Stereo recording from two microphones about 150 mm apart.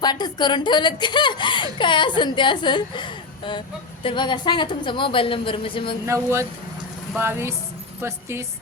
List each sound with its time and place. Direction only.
0.0 s a woman's voice: 30° left (ahead or behind)
6.1 s a woman's voice: 20° right (ahead or behind)